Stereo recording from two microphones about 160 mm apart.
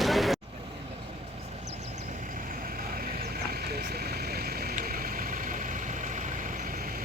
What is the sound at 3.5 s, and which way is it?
Vehicle, 70° right (ahead or behind).